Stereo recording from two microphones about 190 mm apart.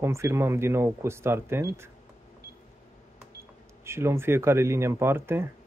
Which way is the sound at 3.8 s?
15° right (ahead or behind).